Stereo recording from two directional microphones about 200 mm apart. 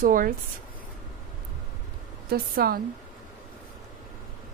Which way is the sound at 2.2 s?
50° right (ahead or behind).